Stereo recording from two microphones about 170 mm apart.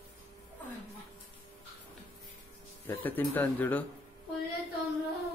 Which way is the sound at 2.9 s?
10° left (ahead or behind).